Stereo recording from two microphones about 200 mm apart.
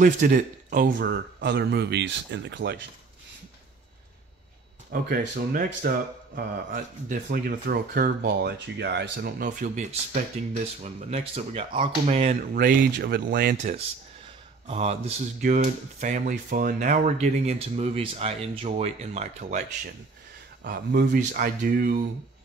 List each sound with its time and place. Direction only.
0.0 s a man's voice: 45° right (ahead or behind)
0.9 s speech: 60° right (ahead or behind)
5.1 s speech: 45° right (ahead or behind)
9.4 s speech: 40° right (ahead or behind)
12.5 s speech: 50° right (ahead or behind)
14.7 s speech: 30° right (ahead or behind)
20.6 s speech: 50° right (ahead or behind)